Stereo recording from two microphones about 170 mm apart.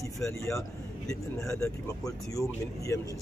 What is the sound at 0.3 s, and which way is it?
Speech, 15° left (ahead or behind).